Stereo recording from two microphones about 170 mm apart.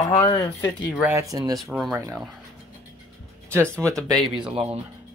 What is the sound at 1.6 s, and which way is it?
Speech, 5° right (ahead or behind).